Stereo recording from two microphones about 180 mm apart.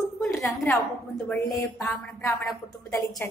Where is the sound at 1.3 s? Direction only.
5° left (ahead or behind).